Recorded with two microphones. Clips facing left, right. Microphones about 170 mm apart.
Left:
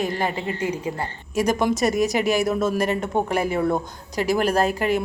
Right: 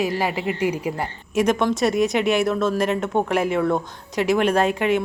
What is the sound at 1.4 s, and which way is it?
A woman's voice, 5° left (ahead or behind).